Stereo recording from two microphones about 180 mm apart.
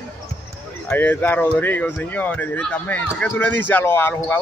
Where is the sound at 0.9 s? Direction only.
10° left (ahead or behind).